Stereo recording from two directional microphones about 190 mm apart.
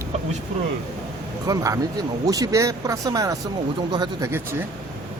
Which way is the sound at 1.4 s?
20° right (ahead or behind).